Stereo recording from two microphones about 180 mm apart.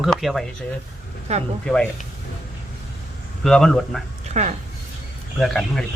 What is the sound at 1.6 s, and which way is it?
Speech, 5° left (ahead or behind).